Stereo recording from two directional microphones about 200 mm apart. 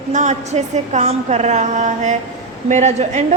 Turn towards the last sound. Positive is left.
turn(degrees=-35)  # may be behind; listen again after turning